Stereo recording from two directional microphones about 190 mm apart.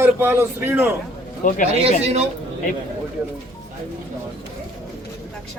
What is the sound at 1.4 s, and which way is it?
Speech, 40° left (ahead or behind).